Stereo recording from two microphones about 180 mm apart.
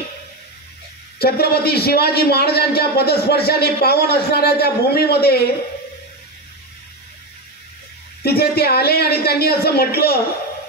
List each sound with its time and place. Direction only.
1.2 s a man's voice: 60° left (ahead or behind)
8.2 s a man's voice: 60° left (ahead or behind)